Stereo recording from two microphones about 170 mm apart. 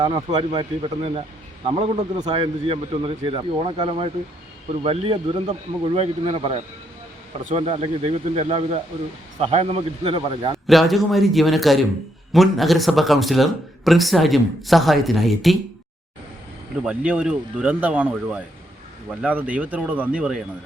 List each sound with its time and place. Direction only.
0.0 s speech: 25° right (ahead or behind)
10.7 s speech: centre (ahead or behind)
16.8 s speech: 5° right (ahead or behind)